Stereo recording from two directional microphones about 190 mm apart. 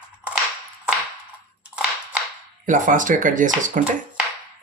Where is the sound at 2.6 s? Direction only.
45° right (ahead or behind).